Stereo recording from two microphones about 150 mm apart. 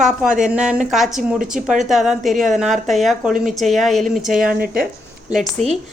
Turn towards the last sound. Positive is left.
turn(degrees=0)  # may be behind; listen again after turning